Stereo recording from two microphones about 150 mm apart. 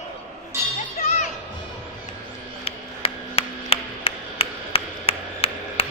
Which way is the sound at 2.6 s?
40° left (ahead or behind).